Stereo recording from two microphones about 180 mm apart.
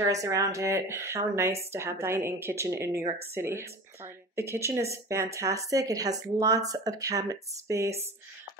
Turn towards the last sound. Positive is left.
turn(degrees=-15)  # may be behind; listen again after turning